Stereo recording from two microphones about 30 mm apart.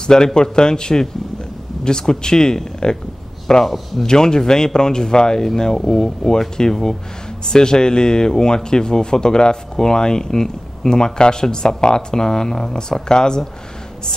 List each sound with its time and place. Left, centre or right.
0.0 s speech: left
3.6 s speech: centre
4.0 s speech: left
5.8 s speech: centre